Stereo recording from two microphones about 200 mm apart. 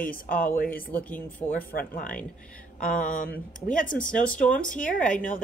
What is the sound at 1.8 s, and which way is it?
Speech, 45° left (ahead or behind).